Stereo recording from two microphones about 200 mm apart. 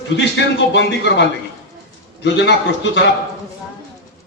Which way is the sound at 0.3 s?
60° left (ahead or behind).